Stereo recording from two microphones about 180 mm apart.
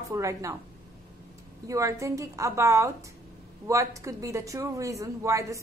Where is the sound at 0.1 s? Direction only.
15° right (ahead or behind).